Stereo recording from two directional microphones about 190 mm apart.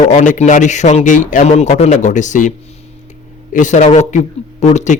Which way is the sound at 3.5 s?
40° left (ahead or behind).